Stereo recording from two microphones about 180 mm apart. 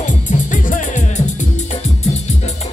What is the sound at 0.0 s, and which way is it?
Music, 45° left (ahead or behind).